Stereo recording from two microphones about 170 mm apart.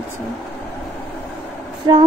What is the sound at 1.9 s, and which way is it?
Female singing, 30° right (ahead or behind).